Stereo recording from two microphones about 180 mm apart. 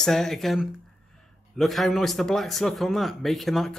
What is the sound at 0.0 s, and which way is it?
A man's voice, centre (ahead or behind).